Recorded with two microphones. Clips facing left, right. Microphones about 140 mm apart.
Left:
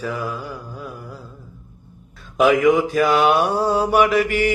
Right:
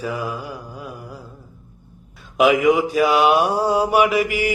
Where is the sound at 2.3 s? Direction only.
5° right (ahead or behind).